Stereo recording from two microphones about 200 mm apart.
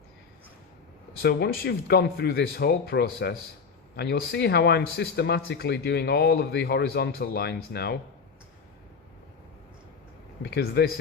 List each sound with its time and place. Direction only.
1.2 s a man's voice: 55° left (ahead or behind)
10.4 s speech: 55° left (ahead or behind)